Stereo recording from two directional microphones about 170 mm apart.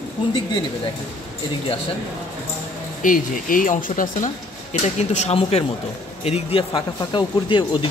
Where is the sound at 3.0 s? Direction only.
50° left (ahead or behind).